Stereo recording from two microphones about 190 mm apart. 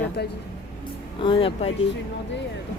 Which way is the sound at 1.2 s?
25° left (ahead or behind).